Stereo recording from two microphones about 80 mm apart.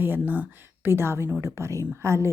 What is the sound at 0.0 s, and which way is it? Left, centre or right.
A woman's voice, right.